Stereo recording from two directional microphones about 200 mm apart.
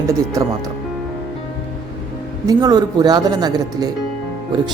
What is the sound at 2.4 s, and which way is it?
A man's voice, 20° right (ahead or behind).